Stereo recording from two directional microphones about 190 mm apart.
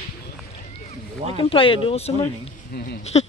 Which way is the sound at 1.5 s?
25° left (ahead or behind).